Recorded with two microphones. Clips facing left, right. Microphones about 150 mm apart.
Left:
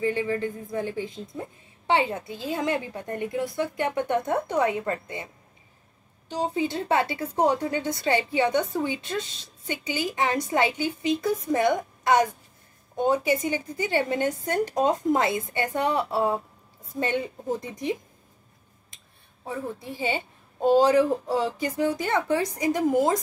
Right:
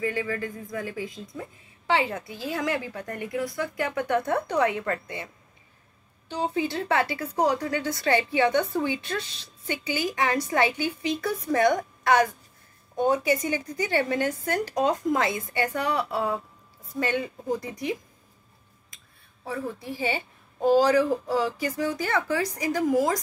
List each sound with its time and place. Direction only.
0.0 s a woman's voice: 25° left (ahead or behind)
19.4 s a woman's voice: 25° left (ahead or behind)